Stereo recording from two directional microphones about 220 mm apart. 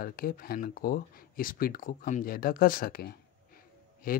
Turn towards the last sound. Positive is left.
turn(degrees=40)  # may be behind; listen again after turning